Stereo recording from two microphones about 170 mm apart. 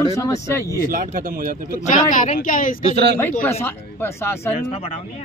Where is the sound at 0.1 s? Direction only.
20° left (ahead or behind).